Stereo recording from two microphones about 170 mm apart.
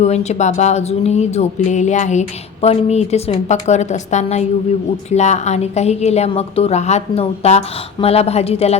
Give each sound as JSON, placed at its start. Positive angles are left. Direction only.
{"t": 0.0, "sound": "speech", "side_deg": 40}